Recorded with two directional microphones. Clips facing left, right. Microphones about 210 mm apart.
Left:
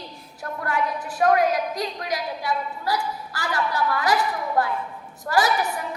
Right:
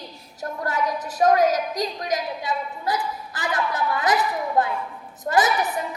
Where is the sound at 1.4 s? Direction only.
40° right (ahead or behind).